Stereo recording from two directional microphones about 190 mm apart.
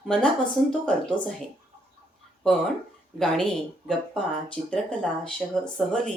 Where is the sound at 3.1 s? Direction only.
5° left (ahead or behind).